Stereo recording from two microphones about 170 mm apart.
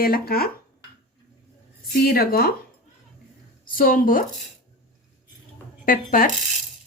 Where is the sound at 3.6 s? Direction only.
55° left (ahead or behind).